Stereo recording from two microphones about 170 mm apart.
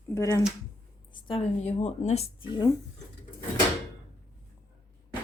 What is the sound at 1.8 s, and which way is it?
Speech, 40° left (ahead or behind).